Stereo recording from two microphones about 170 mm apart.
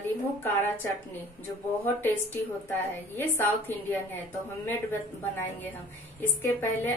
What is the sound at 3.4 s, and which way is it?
A woman's voice, 10° left (ahead or behind).